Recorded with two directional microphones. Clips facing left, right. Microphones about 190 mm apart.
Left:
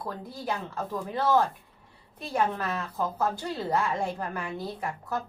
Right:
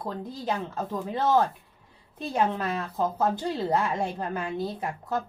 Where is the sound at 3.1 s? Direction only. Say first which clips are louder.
Right 3 dB; 20° right (ahead or behind).